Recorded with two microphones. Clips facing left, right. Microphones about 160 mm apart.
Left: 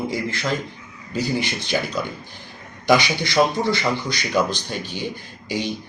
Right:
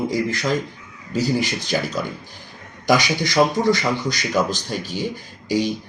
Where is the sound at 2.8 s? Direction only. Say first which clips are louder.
Even; 45° right (ahead or behind).